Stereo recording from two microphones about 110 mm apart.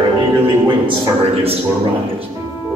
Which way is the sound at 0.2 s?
50° right (ahead or behind).